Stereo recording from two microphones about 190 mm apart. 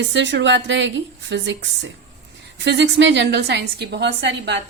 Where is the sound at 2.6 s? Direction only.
65° right (ahead or behind).